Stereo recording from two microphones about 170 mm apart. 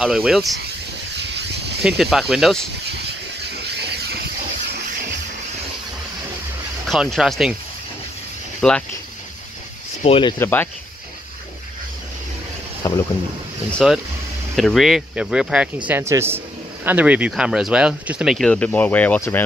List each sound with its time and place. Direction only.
0.0 s speech: 5° right (ahead or behind)
1.1 s a sound: 90° right
1.8 s speech: centre (ahead or behind)
3.6 s vehicle: 75° right (ahead or behind)
6.9 s speech: centre (ahead or behind)
8.5 s speech: 5° left (ahead or behind)
10.0 s speech: 35° left (ahead or behind)
10.4 s speech: 10° left (ahead or behind)
12.8 s speech: 20° left (ahead or behind)
13.8 s speech: centre (ahead or behind)